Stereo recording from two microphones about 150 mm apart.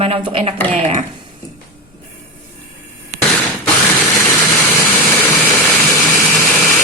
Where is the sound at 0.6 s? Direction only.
10° left (ahead or behind).